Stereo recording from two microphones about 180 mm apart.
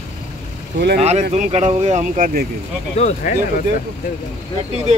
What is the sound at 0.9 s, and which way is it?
Speech, 40° right (ahead or behind).